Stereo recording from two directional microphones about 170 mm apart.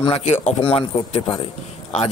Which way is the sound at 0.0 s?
35° left (ahead or behind).